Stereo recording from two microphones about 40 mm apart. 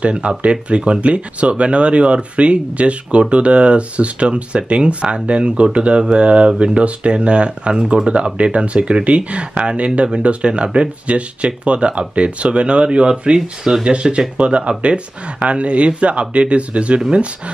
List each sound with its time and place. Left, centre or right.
0.0 s speech: right